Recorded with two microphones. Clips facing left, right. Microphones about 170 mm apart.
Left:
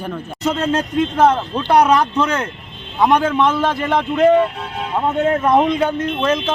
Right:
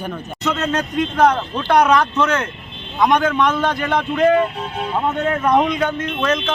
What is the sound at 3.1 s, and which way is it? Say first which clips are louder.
Speech: left 2 dB; 30° left (ahead or behind).